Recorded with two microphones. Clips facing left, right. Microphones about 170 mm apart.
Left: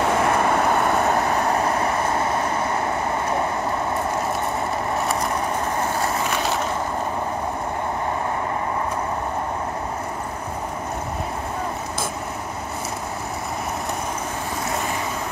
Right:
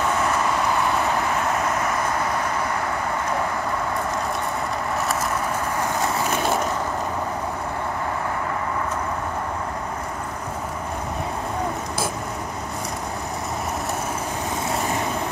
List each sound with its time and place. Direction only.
0.0 s vehicle: 60° left (ahead or behind); by 2.8 s 25° left (ahead or behind)